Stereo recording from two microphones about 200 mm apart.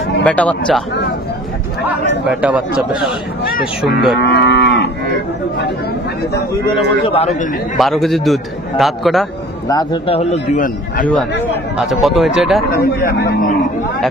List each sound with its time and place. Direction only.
0.2 s a man's voice: 5° left (ahead or behind)
2.2 s a man's voice: 5° right (ahead or behind)
4.2 s moo: 55° left (ahead or behind)
7.2 s a man's voice: 35° left (ahead or behind)
7.7 s a man's voice: centre (ahead or behind)
9.7 s a man's voice: 25° left (ahead or behind)
10.5 s a man's voice: 40° left (ahead or behind)
11.8 s a man's voice: centre (ahead or behind)
12.7 s speech: 50° left (ahead or behind)